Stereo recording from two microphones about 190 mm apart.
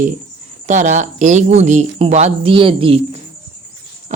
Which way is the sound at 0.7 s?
40° right (ahead or behind).